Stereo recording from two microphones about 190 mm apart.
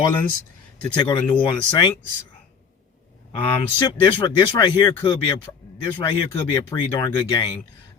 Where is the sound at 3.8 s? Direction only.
25° left (ahead or behind).